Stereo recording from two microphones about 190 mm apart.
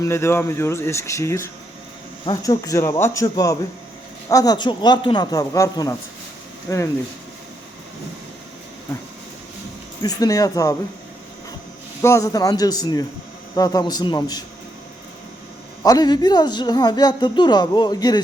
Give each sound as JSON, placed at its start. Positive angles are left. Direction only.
{"t": 0.0, "sound": "speech", "side_deg": 15}
{"t": 10.0, "sound": "speech", "side_deg": 20}
{"t": 12.0, "sound": "speech", "side_deg": 15}
{"t": 15.8, "sound": "speech", "side_deg": 20}